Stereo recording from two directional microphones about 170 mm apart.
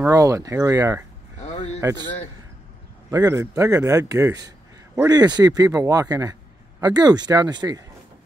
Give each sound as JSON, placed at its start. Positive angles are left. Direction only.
{"t": 0.0, "sound": "a man's voice", "side_deg": -20}
{"t": 1.4, "sound": "a sound", "side_deg": 40}
{"t": 1.8, "sound": "speech", "side_deg": -20}
{"t": 3.1, "sound": "a man's voice", "side_deg": -20}